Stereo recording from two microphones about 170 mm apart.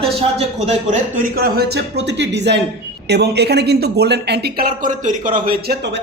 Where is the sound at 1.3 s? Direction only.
65° right (ahead or behind); by 2.6 s 90° right.